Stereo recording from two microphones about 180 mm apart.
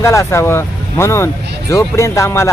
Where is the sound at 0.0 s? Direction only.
15° left (ahead or behind).